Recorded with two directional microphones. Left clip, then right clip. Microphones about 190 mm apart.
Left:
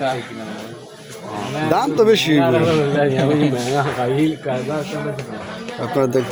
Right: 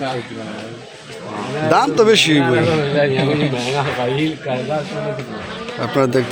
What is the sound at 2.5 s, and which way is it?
Speech, 55° left (ahead or behind).